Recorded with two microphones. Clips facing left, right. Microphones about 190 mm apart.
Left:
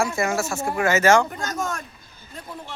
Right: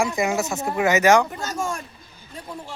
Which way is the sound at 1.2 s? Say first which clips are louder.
Even; 5° right (ahead or behind).